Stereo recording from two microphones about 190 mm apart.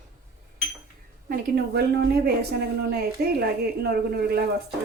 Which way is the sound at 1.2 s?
55° right (ahead or behind).